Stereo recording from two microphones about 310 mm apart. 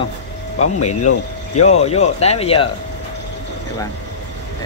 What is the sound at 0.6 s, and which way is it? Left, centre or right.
Speech, left.